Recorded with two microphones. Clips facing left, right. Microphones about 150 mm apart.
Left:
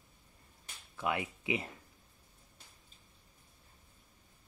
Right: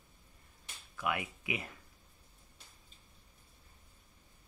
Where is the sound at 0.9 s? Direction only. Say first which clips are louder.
Left 1 dB; 25° left (ahead or behind).